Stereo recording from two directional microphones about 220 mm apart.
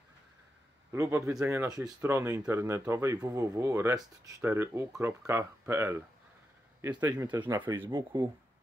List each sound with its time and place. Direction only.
0.9 s speech: 10° right (ahead or behind)